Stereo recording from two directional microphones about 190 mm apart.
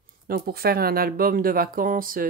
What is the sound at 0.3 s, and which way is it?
Speech, 55° right (ahead or behind).